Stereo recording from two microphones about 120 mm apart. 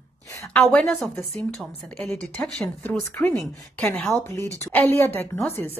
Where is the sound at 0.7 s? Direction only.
5° left (ahead or behind).